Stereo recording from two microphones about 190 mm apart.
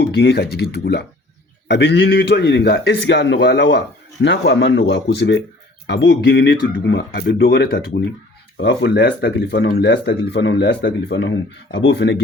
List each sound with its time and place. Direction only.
0.0 s a man's voice: 60° left (ahead or behind)